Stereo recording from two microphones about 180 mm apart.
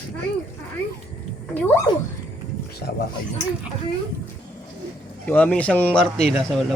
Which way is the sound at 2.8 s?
65° left (ahead or behind).